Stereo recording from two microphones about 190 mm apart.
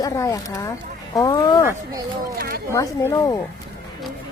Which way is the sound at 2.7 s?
15° left (ahead or behind).